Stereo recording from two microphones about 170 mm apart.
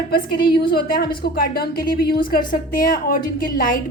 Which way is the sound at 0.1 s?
65° left (ahead or behind).